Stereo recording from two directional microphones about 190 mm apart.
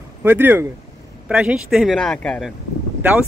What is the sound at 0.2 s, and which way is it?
Speech, 10° right (ahead or behind).